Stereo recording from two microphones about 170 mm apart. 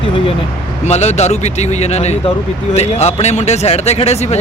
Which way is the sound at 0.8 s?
40° left (ahead or behind).